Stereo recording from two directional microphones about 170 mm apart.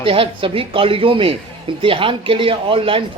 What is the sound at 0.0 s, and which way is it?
Speech, 30° right (ahead or behind).